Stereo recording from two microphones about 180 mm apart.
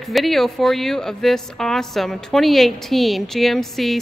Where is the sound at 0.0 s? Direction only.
Centre (ahead or behind).